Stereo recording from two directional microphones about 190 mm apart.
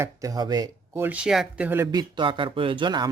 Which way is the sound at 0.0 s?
20° right (ahead or behind).